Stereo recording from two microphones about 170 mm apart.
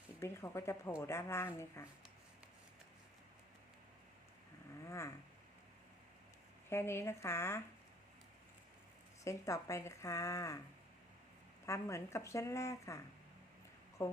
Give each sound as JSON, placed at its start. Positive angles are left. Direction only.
{"t": 0.2, "sound": "speech", "side_deg": 15}
{"t": 4.9, "sound": "speech", "side_deg": 15}
{"t": 6.7, "sound": "speech", "side_deg": 15}
{"t": 9.2, "sound": "speech", "side_deg": 15}
{"t": 11.6, "sound": "speech", "side_deg": 15}
{"t": 14.0, "sound": "speech", "side_deg": 15}